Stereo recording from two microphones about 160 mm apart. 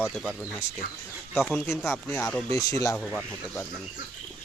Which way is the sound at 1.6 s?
15° left (ahead or behind).